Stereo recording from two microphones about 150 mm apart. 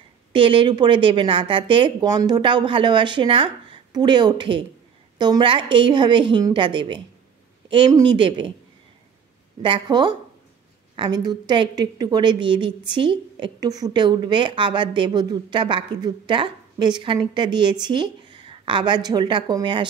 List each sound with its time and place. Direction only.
0.3 s a woman's voice: 35° right (ahead or behind)
9.6 s a woman's voice: 30° right (ahead or behind)